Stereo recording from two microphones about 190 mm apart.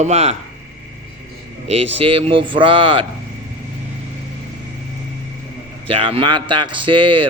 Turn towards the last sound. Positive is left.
turn(degrees=-25)  # may be behind; listen again after turning